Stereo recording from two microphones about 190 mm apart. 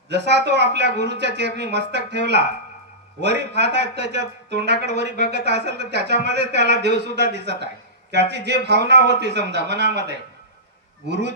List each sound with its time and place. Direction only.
0.1 s speech: 65° right (ahead or behind)